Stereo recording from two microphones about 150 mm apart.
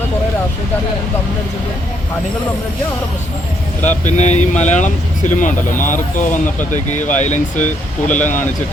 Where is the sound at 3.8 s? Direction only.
50° left (ahead or behind).